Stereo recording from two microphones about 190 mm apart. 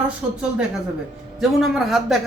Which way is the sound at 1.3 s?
Centre (ahead or behind).